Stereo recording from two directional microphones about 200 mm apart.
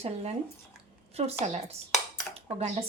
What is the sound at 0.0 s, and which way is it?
Speech, 30° right (ahead or behind).